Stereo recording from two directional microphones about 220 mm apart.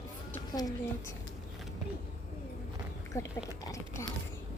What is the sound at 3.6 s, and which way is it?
Speech, 15° left (ahead or behind).